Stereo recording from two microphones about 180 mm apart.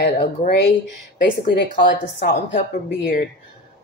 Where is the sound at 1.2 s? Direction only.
75° left (ahead or behind).